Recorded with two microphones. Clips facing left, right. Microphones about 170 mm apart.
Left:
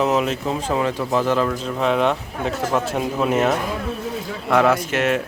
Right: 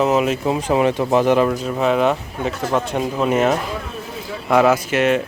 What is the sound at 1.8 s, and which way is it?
Speech, 5° right (ahead or behind).